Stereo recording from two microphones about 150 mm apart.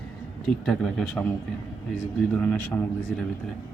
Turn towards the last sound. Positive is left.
turn(degrees=5)  # may be behind; listen again after turning